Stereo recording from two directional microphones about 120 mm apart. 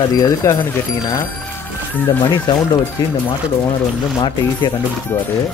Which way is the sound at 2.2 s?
35° left (ahead or behind).